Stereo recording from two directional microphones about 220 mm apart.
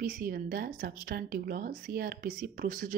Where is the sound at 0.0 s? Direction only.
40° right (ahead or behind).